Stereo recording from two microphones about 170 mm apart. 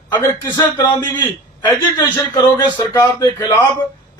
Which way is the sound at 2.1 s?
25° left (ahead or behind).